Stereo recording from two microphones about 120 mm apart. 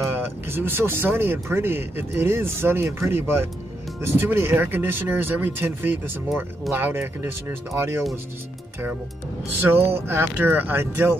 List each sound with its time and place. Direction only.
0.0 s speech: 20° right (ahead or behind)
9.9 s speech: 20° right (ahead or behind)